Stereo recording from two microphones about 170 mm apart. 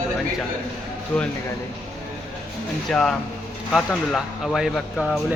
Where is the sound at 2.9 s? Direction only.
5° left (ahead or behind).